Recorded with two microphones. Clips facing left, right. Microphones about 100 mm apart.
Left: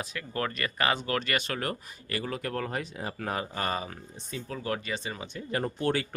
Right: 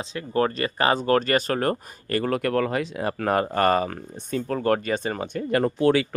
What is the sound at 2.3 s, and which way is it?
Speech, 75° right (ahead or behind).